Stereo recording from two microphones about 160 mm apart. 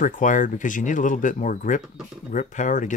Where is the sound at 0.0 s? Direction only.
55° left (ahead or behind).